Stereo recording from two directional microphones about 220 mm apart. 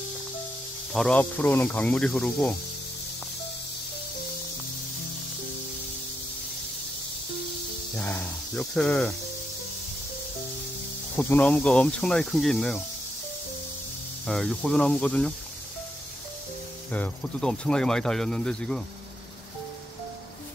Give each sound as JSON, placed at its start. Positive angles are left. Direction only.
{"t": 0.9, "sound": "speech", "side_deg": 5}
{"t": 7.9, "sound": "speech", "side_deg": 10}
{"t": 11.1, "sound": "speech", "side_deg": 5}
{"t": 14.2, "sound": "speech", "side_deg": 5}
{"t": 16.9, "sound": "speech", "side_deg": 5}